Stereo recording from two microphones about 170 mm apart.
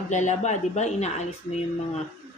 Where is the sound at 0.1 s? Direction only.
45° left (ahead or behind).